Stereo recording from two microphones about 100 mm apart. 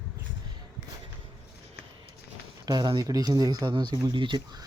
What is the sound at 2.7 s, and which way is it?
Speech, 45° right (ahead or behind).